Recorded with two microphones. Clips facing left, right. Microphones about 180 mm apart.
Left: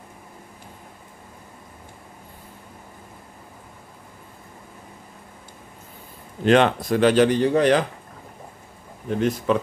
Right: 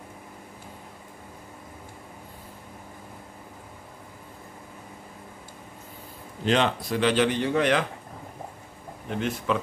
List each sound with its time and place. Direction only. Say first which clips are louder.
6.4 s speech: left 7 dB; 55° left (ahead or behind); by 7.8 s 35° left (ahead or behind)
9.1 s speech: left 6 dB; 40° left (ahead or behind)